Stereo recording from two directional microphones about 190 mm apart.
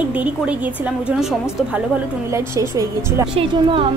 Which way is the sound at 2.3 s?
15° right (ahead or behind).